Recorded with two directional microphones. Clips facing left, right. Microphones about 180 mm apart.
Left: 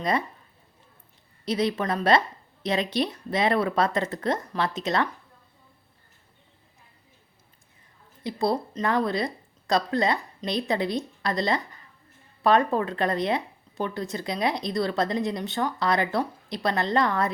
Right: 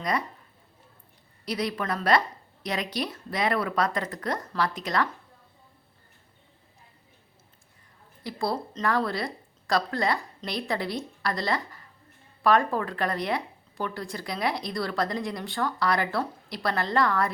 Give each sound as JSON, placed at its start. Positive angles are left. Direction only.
{"t": 0.0, "sound": "speech", "side_deg": 25}
{"t": 1.5, "sound": "speech", "side_deg": 25}
{"t": 8.2, "sound": "a woman's voice", "side_deg": 20}